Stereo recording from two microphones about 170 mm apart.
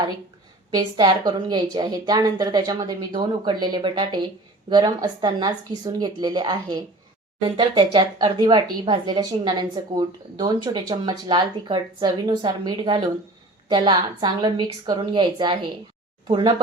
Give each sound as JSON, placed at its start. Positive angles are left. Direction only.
{"t": 0.7, "sound": "a woman's voice", "side_deg": -25}